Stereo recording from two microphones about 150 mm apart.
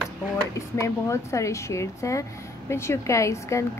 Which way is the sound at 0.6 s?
20° left (ahead or behind).